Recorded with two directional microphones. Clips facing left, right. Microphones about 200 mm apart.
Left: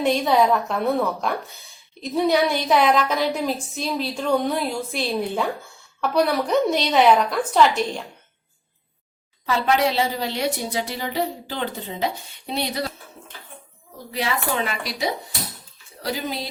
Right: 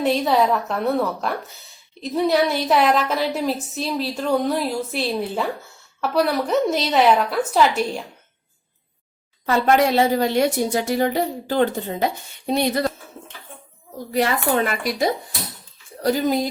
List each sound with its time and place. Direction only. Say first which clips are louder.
0.0 s a woman's voice: even; centre (ahead or behind)
9.5 s a woman's voice: right 3 dB; 50° right (ahead or behind)
14.1 s a woman's voice: right 5 dB; 50° right (ahead or behind)